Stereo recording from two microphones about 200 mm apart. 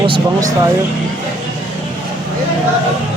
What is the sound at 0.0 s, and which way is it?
Speech, 20° right (ahead or behind).